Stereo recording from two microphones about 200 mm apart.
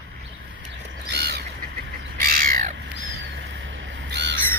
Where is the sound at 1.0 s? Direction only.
55° right (ahead or behind).